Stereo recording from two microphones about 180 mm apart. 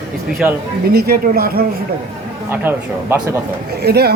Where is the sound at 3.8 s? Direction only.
60° right (ahead or behind).